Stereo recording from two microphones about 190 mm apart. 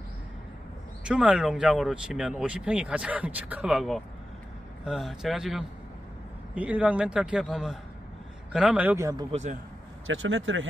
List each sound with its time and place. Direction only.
1.0 s a man's voice: 5° right (ahead or behind)
9.3 s speech: 40° right (ahead or behind)
10.0 s speech: 90° right